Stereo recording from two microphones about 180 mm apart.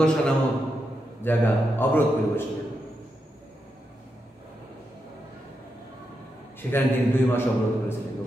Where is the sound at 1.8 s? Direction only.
10° left (ahead or behind).